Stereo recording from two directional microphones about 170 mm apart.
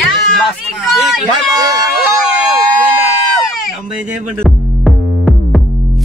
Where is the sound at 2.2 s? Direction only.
Centre (ahead or behind).